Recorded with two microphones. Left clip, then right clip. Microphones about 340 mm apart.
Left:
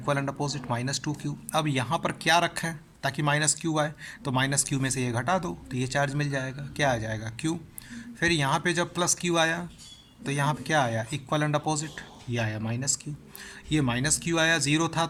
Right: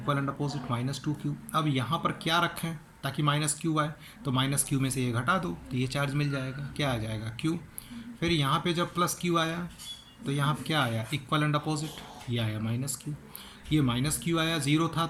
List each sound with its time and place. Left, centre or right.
0.0 s speech: left